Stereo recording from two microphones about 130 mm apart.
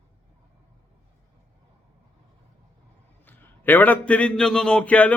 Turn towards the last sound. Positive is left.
turn(degrees=10)  # may be behind; listen again after turning